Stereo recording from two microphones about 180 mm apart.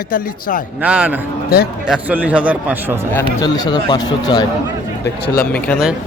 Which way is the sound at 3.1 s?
20° left (ahead or behind).